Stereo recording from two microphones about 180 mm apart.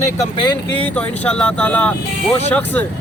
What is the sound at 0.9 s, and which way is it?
Speech, 10° left (ahead or behind).